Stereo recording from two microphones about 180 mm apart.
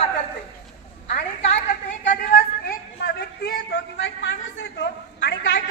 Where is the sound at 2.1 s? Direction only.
50° left (ahead or behind).